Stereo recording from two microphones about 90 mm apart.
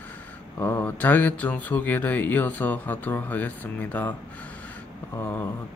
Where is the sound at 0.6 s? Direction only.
25° left (ahead or behind).